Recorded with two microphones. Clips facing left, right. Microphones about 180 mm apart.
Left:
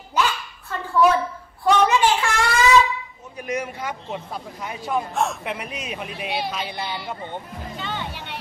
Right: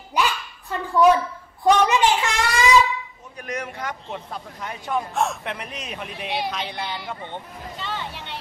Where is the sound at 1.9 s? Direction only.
20° right (ahead or behind).